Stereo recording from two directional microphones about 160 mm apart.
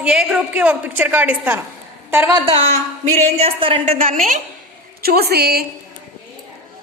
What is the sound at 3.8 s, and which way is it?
Speech, 55° right (ahead or behind).